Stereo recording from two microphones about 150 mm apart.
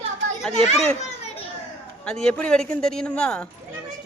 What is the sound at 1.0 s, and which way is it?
Children playing, 45° left (ahead or behind).